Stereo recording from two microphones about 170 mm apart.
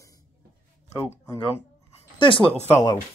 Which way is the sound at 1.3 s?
35° left (ahead or behind).